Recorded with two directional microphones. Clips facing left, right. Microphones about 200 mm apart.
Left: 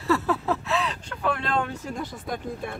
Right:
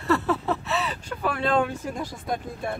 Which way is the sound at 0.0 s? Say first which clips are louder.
Even; centre (ahead or behind).